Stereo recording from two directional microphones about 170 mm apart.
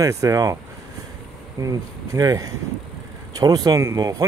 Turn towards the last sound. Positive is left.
turn(degrees=-20)  # may be behind; listen again after turning